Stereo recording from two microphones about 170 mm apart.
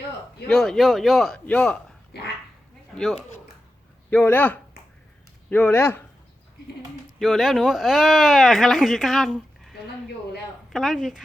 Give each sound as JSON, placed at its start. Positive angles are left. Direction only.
{"t": 0.4, "sound": "speech", "side_deg": 5}
{"t": 2.1, "sound": "speech", "side_deg": 75}
{"t": 2.9, "sound": "speech", "side_deg": 0}
{"t": 7.2, "sound": "speech", "side_deg": 0}